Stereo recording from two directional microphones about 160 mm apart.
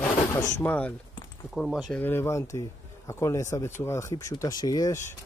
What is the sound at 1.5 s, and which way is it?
Speech, centre (ahead or behind).